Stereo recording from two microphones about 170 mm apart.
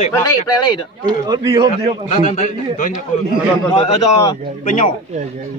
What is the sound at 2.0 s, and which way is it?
Speech, 40° left (ahead or behind).